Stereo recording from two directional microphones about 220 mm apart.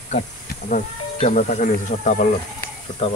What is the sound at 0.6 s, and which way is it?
Speech, 40° left (ahead or behind).